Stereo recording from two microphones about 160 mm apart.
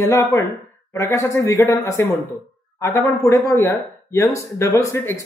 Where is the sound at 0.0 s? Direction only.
15° left (ahead or behind).